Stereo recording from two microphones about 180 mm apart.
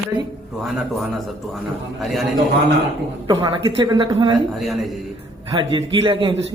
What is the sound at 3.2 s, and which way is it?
A man's voice, 25° right (ahead or behind).